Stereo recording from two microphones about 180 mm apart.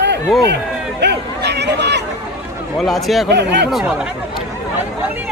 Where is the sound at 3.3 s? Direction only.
70° right (ahead or behind).